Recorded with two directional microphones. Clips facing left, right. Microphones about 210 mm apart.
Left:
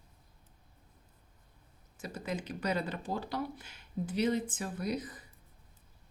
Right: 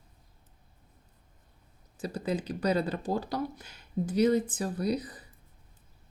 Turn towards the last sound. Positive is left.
turn(degrees=-35)  # may be behind; listen again after turning